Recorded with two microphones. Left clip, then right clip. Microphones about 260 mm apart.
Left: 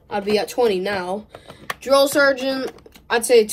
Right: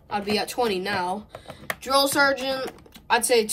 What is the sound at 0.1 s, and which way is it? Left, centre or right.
Speech, centre.